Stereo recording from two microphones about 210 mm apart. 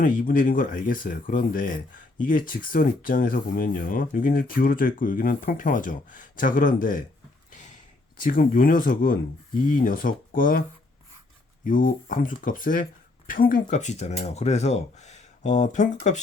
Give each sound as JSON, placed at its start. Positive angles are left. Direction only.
{"t": 0.0, "sound": "speech", "side_deg": 40}
{"t": 7.5, "sound": "a sound", "side_deg": 35}
{"t": 8.2, "sound": "speech", "side_deg": 40}
{"t": 11.6, "sound": "speech", "side_deg": 40}